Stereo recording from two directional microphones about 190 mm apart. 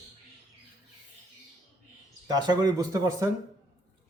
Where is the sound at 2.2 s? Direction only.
20° right (ahead or behind).